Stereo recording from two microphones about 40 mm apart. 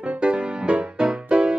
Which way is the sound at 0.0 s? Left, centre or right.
Right.